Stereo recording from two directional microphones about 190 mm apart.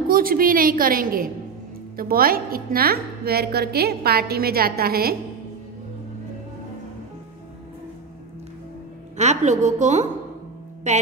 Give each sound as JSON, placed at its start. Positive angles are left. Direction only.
{"t": 0.1, "sound": "a woman's voice", "side_deg": -50}
{"t": 9.1, "sound": "a woman's voice", "side_deg": -35}